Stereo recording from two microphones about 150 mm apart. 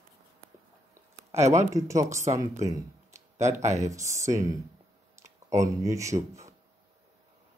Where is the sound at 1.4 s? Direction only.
50° right (ahead or behind).